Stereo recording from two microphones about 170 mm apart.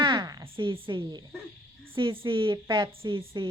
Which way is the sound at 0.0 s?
25° right (ahead or behind).